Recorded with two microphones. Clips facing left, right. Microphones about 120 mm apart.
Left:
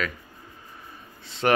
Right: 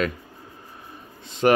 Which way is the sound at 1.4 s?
25° right (ahead or behind).